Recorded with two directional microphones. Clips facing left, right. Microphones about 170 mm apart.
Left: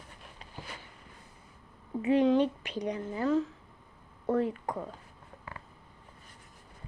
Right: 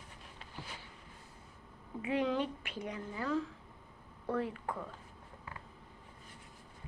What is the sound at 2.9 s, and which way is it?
A woman's voice, 40° left (ahead or behind).